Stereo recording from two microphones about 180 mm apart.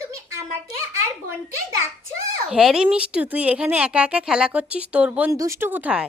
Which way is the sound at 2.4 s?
Centre (ahead or behind).